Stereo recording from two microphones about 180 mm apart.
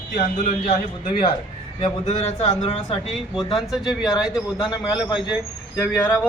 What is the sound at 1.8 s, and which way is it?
A man's voice, 35° left (ahead or behind).